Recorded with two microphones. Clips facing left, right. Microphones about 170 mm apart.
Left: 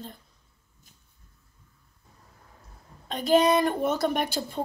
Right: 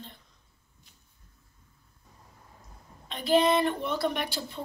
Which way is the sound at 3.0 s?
45° left (ahead or behind).